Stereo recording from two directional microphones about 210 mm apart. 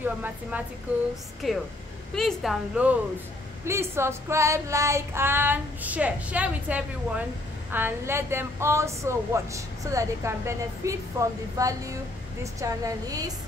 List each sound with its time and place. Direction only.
0.0 s a woman's voice: 10° right (ahead or behind)